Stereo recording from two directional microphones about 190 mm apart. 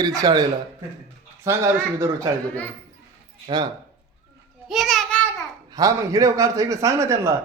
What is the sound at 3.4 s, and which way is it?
Speech, 25° right (ahead or behind).